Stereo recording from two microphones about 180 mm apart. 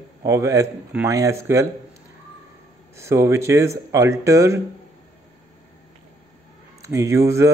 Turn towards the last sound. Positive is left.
turn(degrees=-15)  # may be behind; listen again after turning